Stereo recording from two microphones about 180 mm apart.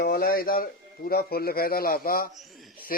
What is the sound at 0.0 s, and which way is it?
A man's voice, 55° left (ahead or behind).